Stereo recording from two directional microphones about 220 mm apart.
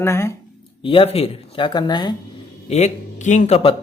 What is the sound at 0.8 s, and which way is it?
A woman's voice, 25° left (ahead or behind).